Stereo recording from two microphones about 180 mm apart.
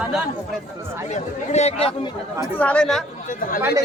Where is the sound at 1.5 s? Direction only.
35° left (ahead or behind).